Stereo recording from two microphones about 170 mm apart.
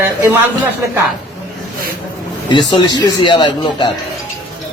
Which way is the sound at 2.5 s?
25° left (ahead or behind).